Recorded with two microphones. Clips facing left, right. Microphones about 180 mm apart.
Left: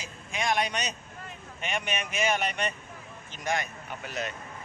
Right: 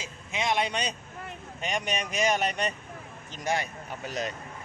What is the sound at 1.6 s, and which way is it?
Speech, 35° right (ahead or behind).